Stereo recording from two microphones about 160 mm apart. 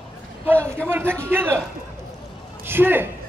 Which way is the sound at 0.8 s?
15° right (ahead or behind).